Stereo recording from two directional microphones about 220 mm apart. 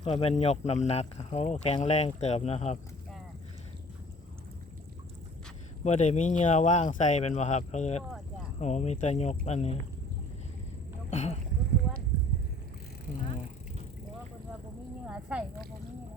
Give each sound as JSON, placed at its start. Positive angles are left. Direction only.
{"t": 0.0, "sound": "speech", "side_deg": 25}
{"t": 5.8, "sound": "speech", "side_deg": 30}
{"t": 11.1, "sound": "boat", "side_deg": 30}
{"t": 15.0, "sound": "a sound", "side_deg": -5}